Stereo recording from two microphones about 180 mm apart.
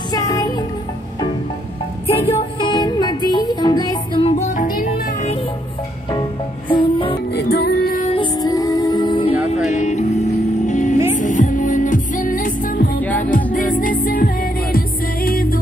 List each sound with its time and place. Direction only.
0.1 s music: 20° left (ahead or behind)
2.1 s music: 30° left (ahead or behind)
4.6 s music: 50° left (ahead or behind)
6.7 s music: 30° left (ahead or behind)
7.3 s music: 65° left (ahead or behind)
8.0 s music: 30° left (ahead or behind)
9.7 s music: 40° left (ahead or behind)